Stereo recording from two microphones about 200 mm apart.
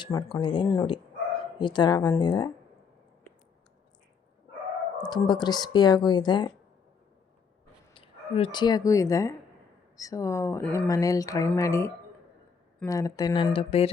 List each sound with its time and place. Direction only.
0.0 s speech: 15° left (ahead or behind)
5.0 s speech: 20° left (ahead or behind)
7.9 s speech: 25° left (ahead or behind)